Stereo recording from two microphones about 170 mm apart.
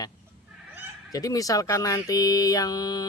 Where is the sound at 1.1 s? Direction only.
20° left (ahead or behind).